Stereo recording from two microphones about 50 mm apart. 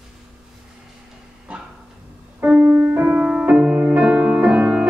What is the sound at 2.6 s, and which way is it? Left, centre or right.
Music, right.